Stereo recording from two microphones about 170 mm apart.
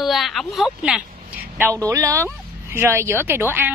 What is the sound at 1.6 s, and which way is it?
A woman's voice, 15° right (ahead or behind).